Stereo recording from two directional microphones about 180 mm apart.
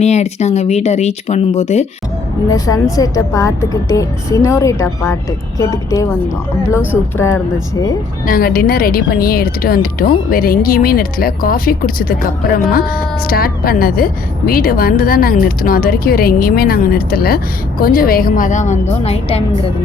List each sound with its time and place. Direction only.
0.0 s speech: 40° left (ahead or behind)
2.5 s a woman's voice: 20° left (ahead or behind)
8.3 s a woman's voice: 55° left (ahead or behind); by 19.7 s 35° left (ahead or behind)